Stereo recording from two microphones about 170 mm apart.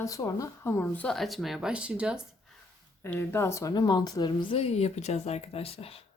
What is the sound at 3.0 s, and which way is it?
A woman's voice, 15° left (ahead or behind).